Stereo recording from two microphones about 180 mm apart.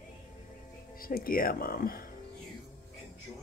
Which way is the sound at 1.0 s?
55° left (ahead or behind).